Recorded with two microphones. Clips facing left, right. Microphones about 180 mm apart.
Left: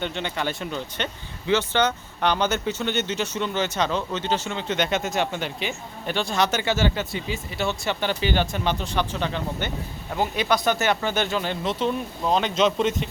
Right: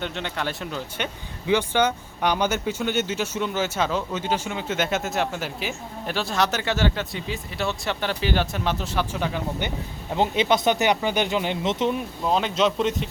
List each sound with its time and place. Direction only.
0.0 s speech: centre (ahead or behind)
10.2 s speech: 20° right (ahead or behind)
12.2 s speech: centre (ahead or behind)